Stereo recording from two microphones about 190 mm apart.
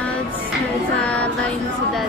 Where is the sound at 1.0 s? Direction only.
5° left (ahead or behind).